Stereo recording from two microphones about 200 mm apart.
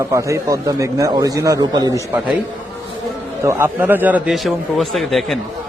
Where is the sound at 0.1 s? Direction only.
15° right (ahead or behind).